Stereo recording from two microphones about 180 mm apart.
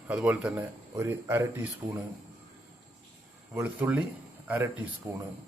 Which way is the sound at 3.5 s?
10° right (ahead or behind).